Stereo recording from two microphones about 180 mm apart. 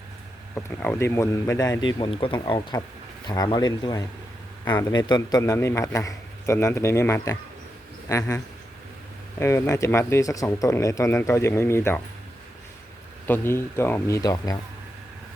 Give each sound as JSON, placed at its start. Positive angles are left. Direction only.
{"t": 0.5, "sound": "a man's voice", "side_deg": 10}
{"t": 9.4, "sound": "a man's voice", "side_deg": 15}
{"t": 13.2, "sound": "a man's voice", "side_deg": 10}